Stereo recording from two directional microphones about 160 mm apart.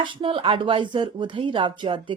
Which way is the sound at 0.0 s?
30° right (ahead or behind).